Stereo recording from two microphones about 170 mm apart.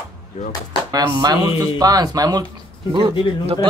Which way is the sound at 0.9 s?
25° right (ahead or behind).